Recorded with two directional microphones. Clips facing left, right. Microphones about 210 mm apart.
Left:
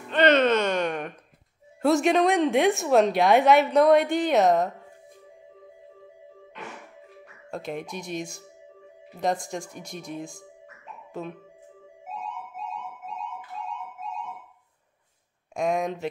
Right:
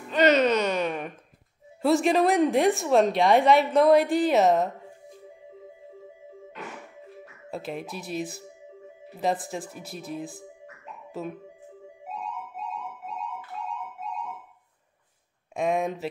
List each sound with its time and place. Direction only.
0.1 s a sound: 5° right (ahead or behind)
1.8 s a woman's voice: centre (ahead or behind)
7.5 s a woman's voice: centre (ahead or behind)
15.5 s a woman's voice: centre (ahead or behind)